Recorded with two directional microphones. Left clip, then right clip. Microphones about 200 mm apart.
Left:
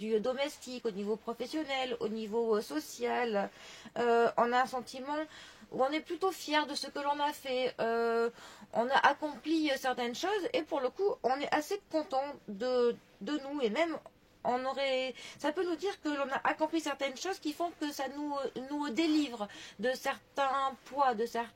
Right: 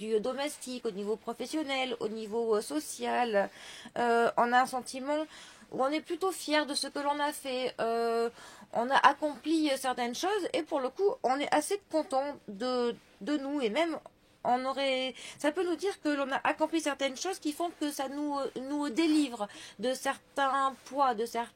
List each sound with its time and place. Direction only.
0.0 s speech: 30° right (ahead or behind)